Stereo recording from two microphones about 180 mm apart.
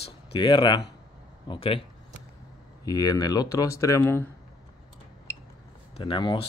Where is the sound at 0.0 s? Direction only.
25° left (ahead or behind).